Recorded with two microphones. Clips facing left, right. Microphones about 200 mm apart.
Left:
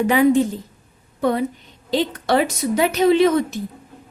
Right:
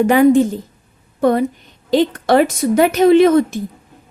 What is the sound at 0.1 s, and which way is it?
A woman's voice, 50° right (ahead or behind).